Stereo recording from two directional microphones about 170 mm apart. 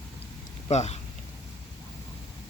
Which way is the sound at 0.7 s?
40° left (ahead or behind).